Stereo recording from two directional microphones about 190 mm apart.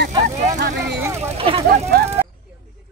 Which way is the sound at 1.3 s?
30° right (ahead or behind).